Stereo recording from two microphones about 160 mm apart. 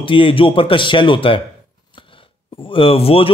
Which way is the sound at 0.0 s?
30° left (ahead or behind).